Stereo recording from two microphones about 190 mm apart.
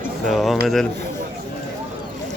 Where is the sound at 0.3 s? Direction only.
Centre (ahead or behind).